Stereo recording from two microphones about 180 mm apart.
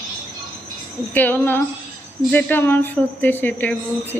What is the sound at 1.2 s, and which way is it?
Speech, 10° left (ahead or behind).